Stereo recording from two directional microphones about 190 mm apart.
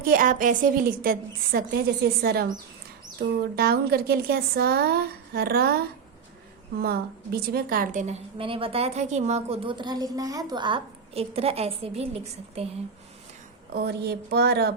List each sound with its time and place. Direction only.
0.0 s a woman's voice: 45° right (ahead or behind)
3.5 s a woman's voice: 55° right (ahead or behind)
6.8 s a woman's voice: 55° right (ahead or behind); by 12.6 s 35° right (ahead or behind)
13.7 s a woman's voice: 55° right (ahead or behind)